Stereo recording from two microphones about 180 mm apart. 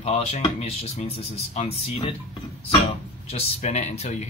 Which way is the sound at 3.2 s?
35° left (ahead or behind).